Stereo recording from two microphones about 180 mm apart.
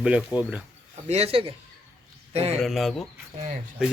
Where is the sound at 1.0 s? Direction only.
35° right (ahead or behind).